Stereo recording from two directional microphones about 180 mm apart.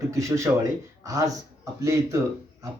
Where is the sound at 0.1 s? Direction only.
15° right (ahead or behind).